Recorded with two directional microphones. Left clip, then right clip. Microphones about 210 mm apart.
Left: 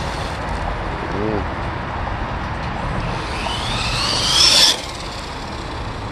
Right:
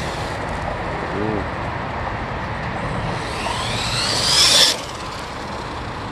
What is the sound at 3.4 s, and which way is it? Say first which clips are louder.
Vehicle: left 1 dB; 15° right (ahead or behind).